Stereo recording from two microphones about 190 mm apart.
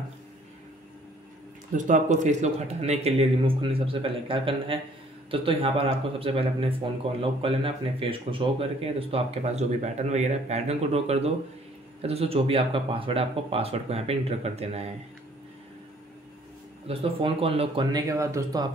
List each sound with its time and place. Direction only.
1.9 s speech: 40° right (ahead or behind)
16.8 s speech: 30° right (ahead or behind)